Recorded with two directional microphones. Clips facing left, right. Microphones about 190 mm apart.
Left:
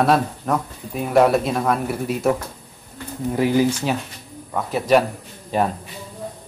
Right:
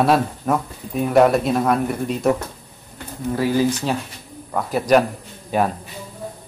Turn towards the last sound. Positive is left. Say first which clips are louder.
# right 1 dB
turn(degrees=-5)  # may be behind; listen again after turning